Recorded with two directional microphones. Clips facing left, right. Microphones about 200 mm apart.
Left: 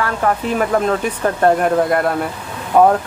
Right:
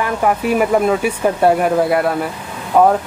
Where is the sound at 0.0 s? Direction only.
10° right (ahead or behind).